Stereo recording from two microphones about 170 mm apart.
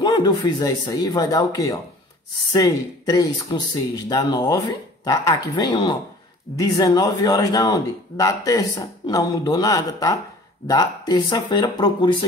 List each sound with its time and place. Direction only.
0.0 s a man's voice: 25° left (ahead or behind)